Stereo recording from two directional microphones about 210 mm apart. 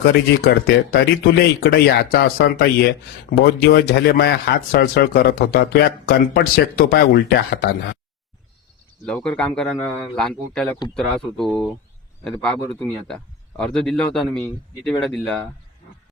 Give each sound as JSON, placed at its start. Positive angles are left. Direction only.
{"t": 0.0, "sound": "speech", "side_deg": 50}
{"t": 9.0, "sound": "a man's voice", "side_deg": 5}